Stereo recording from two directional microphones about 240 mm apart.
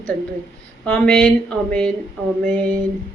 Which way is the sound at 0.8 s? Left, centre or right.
Centre.